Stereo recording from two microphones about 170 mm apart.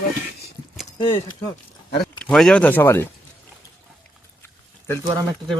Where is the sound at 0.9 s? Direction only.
30° left (ahead or behind).